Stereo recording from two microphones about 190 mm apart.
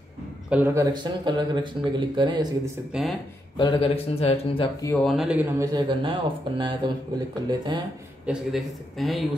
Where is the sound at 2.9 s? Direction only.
Centre (ahead or behind).